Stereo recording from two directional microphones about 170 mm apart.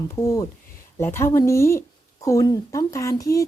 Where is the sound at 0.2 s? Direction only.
15° left (ahead or behind).